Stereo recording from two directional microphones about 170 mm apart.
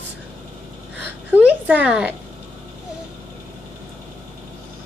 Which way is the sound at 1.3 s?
10° right (ahead or behind).